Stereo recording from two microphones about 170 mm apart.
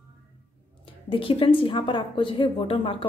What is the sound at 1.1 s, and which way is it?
A woman's voice, 30° left (ahead or behind).